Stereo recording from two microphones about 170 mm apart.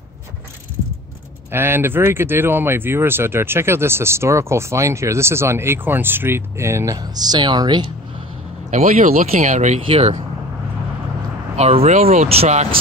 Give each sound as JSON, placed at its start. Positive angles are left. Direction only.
{"t": 1.5, "sound": "speech", "side_deg": -15}
{"t": 8.8, "sound": "speech", "side_deg": -55}
{"t": 9.3, "sound": "speech", "side_deg": -45}
{"t": 11.5, "sound": "speech", "side_deg": -35}